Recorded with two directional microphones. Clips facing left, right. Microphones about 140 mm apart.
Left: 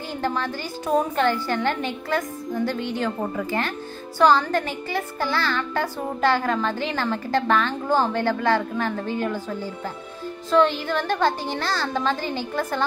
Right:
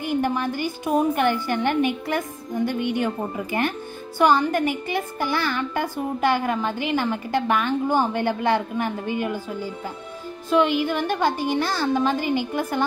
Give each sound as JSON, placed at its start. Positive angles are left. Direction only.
{"t": 0.0, "sound": "speech", "side_deg": -15}